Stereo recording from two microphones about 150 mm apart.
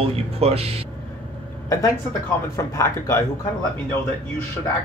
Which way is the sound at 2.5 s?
20° left (ahead or behind).